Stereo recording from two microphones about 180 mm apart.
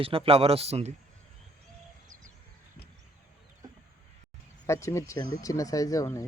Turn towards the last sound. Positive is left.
turn(degrees=15)  # may be behind; listen again after turning